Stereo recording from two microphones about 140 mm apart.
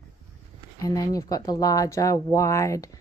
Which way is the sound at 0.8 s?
25° left (ahead or behind).